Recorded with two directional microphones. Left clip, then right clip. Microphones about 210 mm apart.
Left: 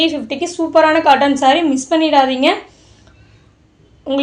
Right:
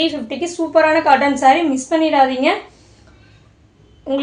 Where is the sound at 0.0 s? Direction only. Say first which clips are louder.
Left 3 dB; 30° left (ahead or behind).